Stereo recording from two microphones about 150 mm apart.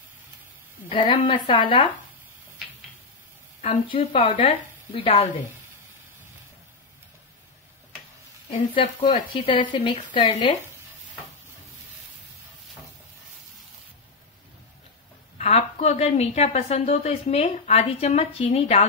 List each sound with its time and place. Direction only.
0.8 s speech: 35° left (ahead or behind)
3.6 s speech: 40° left (ahead or behind)
9.3 s speech: 35° left (ahead or behind)
15.3 s a woman's voice: 45° left (ahead or behind)